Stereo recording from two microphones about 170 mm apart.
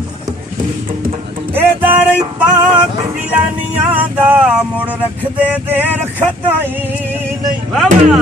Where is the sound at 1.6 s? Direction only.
10° right (ahead or behind).